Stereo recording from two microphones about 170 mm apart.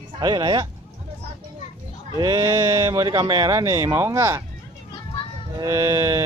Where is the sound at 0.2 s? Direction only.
25° right (ahead or behind).